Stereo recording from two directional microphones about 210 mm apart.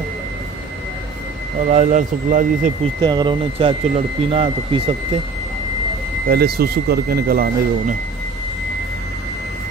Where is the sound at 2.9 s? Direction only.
20° right (ahead or behind).